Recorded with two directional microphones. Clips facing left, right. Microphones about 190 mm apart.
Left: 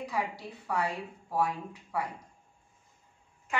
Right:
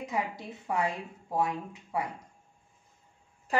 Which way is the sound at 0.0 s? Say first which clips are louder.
Right 1 dB; 20° right (ahead or behind).